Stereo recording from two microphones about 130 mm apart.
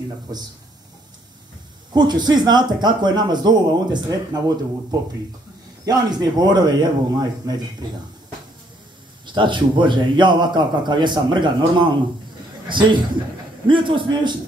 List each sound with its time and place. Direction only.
2.0 s a man's voice: 35° right (ahead or behind)
5.9 s a man's voice: 30° right (ahead or behind)
9.2 s a man's voice: 35° right (ahead or behind)